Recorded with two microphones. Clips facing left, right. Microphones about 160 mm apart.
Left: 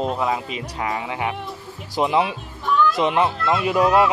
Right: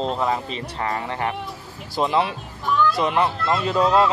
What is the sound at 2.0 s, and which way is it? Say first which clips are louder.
A child's voice: left 1 dB; 15° left (ahead or behind).